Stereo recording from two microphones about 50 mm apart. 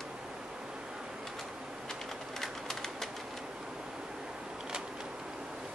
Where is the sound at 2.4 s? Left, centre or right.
Centre.